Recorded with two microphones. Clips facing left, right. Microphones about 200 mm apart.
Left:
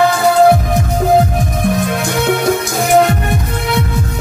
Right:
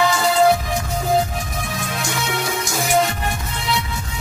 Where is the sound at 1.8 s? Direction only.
55° left (ahead or behind).